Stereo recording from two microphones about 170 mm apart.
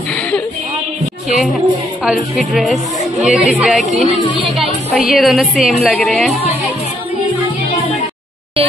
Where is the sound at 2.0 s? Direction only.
5° right (ahead or behind).